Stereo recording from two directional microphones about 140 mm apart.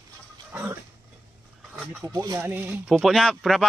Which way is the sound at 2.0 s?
20° right (ahead or behind).